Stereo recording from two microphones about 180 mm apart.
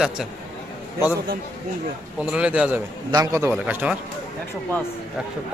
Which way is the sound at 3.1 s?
15° right (ahead or behind).